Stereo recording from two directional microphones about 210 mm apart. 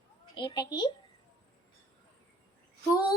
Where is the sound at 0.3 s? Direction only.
20° left (ahead or behind).